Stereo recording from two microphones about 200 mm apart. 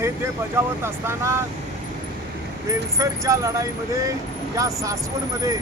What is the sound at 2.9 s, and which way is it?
Speech, 15° right (ahead or behind).